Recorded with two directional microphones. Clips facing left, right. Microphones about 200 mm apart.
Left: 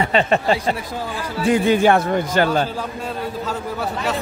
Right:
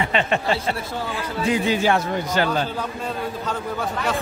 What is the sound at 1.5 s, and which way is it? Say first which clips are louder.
Speech: left 5 dB; 55° left (ahead or behind).